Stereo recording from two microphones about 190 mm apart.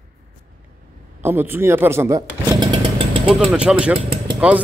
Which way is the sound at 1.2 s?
10° right (ahead or behind).